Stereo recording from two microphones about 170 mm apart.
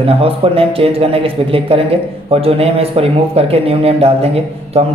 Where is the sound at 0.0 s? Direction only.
35° right (ahead or behind).